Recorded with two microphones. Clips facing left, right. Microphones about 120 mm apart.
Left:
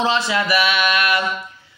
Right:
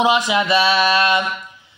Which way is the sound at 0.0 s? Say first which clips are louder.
Right 3 dB; 15° right (ahead or behind).